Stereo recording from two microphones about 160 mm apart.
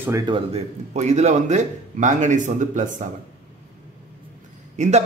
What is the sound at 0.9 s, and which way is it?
Speech, 45° right (ahead or behind).